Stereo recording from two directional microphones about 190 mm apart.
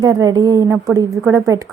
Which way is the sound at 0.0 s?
20° right (ahead or behind).